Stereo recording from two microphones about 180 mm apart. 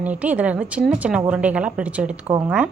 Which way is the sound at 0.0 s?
10° right (ahead or behind).